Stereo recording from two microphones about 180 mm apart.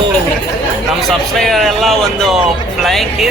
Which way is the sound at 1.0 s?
Centre (ahead or behind).